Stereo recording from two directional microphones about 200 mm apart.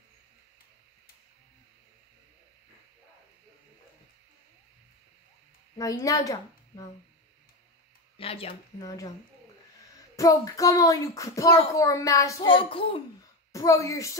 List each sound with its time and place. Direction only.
5.8 s a woman's voice: 15° left (ahead or behind)
8.2 s speech: 30° left (ahead or behind)
10.1 s child singing: 15° left (ahead or behind)
12.4 s speech: 25° left (ahead or behind)
13.5 s child singing: 15° left (ahead or behind)